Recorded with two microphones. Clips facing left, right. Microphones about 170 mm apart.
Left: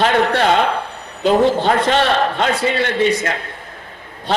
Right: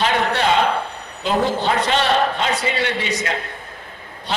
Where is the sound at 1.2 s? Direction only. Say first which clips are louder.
Left 6 dB; 50° left (ahead or behind).